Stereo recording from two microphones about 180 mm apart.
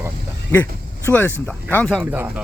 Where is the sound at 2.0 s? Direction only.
10° right (ahead or behind).